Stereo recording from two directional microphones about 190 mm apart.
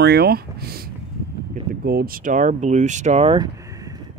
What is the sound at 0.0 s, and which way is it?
Speech, 60° right (ahead or behind).